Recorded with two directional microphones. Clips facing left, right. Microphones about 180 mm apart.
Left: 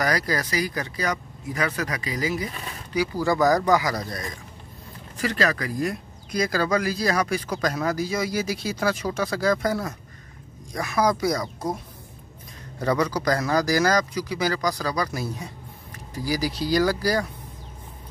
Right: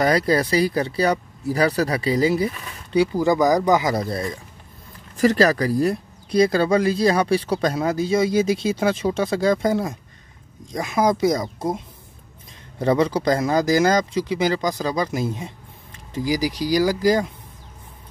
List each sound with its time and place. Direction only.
0.0 s speech: 25° right (ahead or behind)
5.2 s speech: 40° right (ahead or behind); by 17.3 s 20° right (ahead or behind)